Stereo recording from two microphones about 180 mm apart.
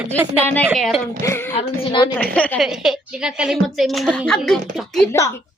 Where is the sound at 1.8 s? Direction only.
25° left (ahead or behind).